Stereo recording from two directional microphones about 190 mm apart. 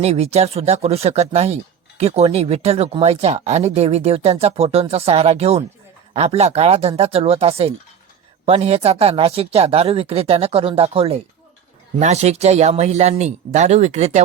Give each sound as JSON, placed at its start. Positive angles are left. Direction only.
{"t": 0.0, "sound": "speech", "side_deg": -35}